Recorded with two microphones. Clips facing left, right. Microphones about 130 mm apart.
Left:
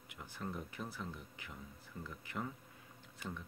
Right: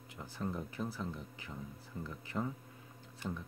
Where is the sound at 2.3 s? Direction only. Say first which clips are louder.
Right 5 dB; 20° right (ahead or behind).